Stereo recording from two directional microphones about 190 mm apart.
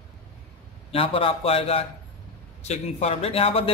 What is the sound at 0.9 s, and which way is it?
A man's voice, 30° left (ahead or behind).